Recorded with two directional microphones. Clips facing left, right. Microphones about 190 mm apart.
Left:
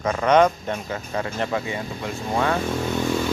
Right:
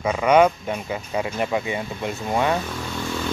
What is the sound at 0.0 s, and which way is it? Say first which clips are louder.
Speech: right 1 dB; 10° right (ahead or behind).